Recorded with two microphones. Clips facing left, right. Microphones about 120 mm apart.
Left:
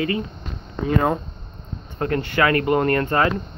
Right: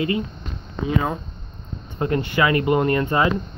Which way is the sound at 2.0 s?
15° right (ahead or behind).